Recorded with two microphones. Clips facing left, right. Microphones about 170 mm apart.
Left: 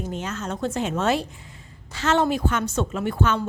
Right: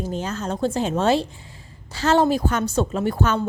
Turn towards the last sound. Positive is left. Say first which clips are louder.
# right 2 dB
turn(degrees=-40)  # may be behind; listen again after turning